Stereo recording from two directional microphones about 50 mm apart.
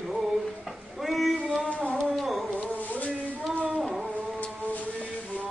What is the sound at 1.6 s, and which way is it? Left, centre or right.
Music, left.